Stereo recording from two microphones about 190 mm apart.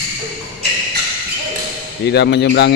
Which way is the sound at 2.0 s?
60° left (ahead or behind).